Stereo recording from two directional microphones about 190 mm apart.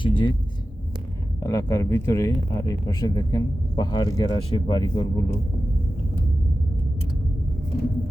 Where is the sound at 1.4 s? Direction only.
15° left (ahead or behind).